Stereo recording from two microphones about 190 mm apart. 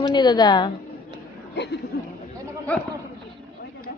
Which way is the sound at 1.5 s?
65° left (ahead or behind).